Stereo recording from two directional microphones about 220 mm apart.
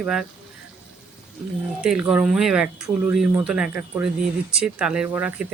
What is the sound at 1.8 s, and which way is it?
Speech, 5° right (ahead or behind).